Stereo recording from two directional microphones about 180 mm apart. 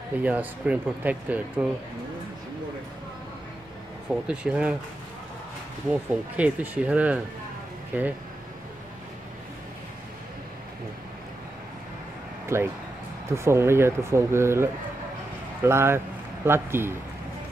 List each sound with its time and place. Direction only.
0.2 s speech: 10° right (ahead or behind)
4.1 s speech: 5° right (ahead or behind)
5.9 s speech: 5° right (ahead or behind)
12.5 s speech: 15° right (ahead or behind)